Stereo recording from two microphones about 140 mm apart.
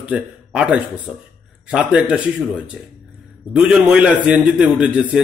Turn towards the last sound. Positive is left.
turn(degrees=-10)  # may be behind; listen again after turning